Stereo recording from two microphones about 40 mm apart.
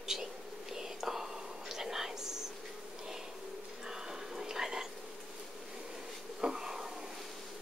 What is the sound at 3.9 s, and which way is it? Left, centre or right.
Whispering, centre.